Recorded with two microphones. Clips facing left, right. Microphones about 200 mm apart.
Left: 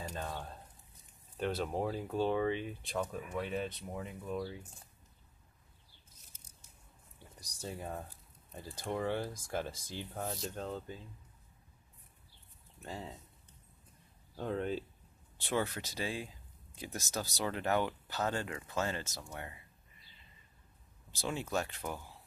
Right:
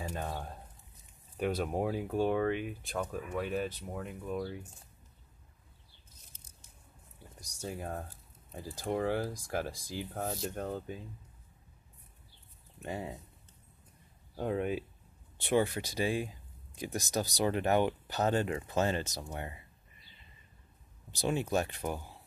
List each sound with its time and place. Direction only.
0.0 s speech: 15° right (ahead or behind)
6.3 s biting: 10° left (ahead or behind)
7.6 s speech: 10° right (ahead or behind)
10.5 s speech: 15° right (ahead or behind)
12.8 s speech: 15° right (ahead or behind)
14.3 s speech: 15° right (ahead or behind)
21.1 s speech: 15° right (ahead or behind)